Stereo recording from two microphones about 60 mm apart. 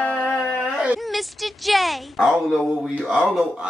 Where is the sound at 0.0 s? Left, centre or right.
Left.